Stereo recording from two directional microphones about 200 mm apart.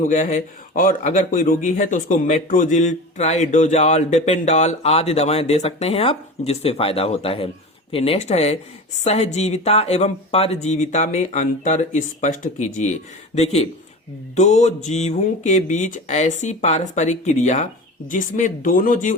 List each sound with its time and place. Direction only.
0.1 s a man's voice: 35° left (ahead or behind)